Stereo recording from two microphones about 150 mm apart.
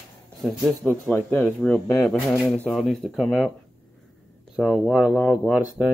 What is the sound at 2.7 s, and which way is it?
Speech, 5° right (ahead or behind).